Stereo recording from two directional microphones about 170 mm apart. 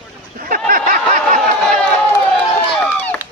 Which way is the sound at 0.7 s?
55° right (ahead or behind).